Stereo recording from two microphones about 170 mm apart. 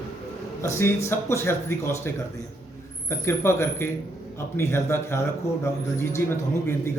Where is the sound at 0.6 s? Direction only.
15° left (ahead or behind).